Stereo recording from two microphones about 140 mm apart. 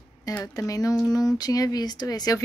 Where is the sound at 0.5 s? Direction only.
25° left (ahead or behind).